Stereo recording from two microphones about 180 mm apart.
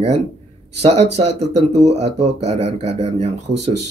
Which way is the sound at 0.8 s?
35° right (ahead or behind).